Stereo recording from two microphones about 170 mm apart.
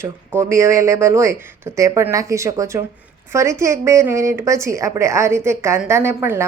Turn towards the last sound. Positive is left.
turn(degrees=-15)  # may be behind; listen again after turning